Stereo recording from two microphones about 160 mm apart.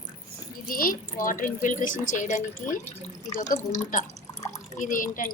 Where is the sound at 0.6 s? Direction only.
60° left (ahead or behind).